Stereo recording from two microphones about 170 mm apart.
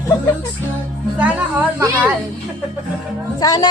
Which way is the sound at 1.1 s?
10° right (ahead or behind).